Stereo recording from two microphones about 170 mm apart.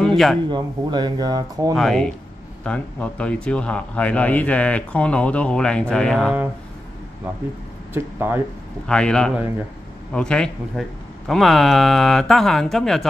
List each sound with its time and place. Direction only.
0.0 s a sound: centre (ahead or behind)
0.5 s speech: 25° right (ahead or behind)
1.8 s a man's voice: centre (ahead or behind)
7.9 s speech: 15° right (ahead or behind)
8.8 s speech: 5° left (ahead or behind)